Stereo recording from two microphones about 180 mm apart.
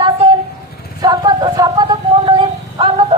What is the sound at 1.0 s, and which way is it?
Music, 20° right (ahead or behind).